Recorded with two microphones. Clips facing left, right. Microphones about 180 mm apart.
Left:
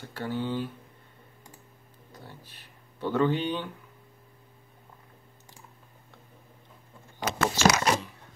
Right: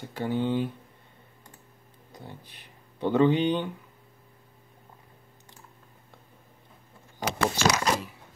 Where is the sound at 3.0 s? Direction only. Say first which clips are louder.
Right 4 dB; 20° right (ahead or behind).